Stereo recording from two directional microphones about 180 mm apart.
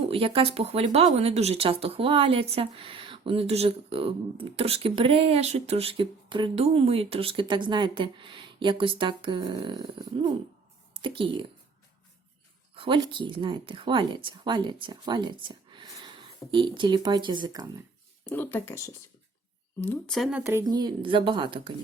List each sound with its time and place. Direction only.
0.1 s speech: 30° right (ahead or behind)
12.7 s speech: 30° right (ahead or behind)
18.3 s speech: 10° left (ahead or behind)
19.8 s speech: 5° left (ahead or behind)
20.4 s speech: 15° right (ahead or behind)